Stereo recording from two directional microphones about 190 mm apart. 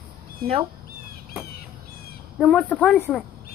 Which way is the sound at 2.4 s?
Centre (ahead or behind).